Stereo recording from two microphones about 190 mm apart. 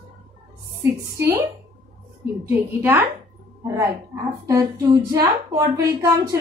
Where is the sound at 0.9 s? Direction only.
15° right (ahead or behind).